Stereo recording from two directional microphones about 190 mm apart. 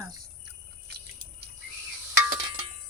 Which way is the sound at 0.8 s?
60° right (ahead or behind).